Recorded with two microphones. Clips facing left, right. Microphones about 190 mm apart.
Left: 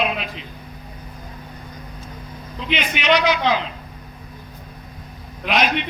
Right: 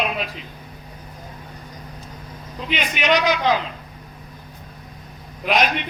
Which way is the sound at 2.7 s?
45° right (ahead or behind).